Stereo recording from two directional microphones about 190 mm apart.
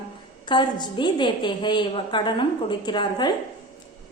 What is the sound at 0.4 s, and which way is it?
A woman's voice, 25° left (ahead or behind).